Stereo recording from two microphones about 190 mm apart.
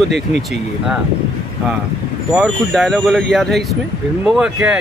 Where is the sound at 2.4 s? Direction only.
Centre (ahead or behind).